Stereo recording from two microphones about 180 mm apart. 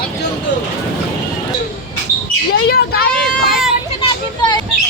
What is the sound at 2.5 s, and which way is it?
Speech, 60° left (ahead or behind).